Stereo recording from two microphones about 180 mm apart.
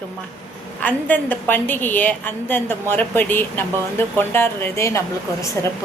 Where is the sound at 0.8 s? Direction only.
10° left (ahead or behind).